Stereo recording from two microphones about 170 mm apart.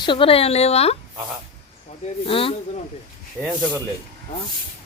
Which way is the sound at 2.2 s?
30° left (ahead or behind).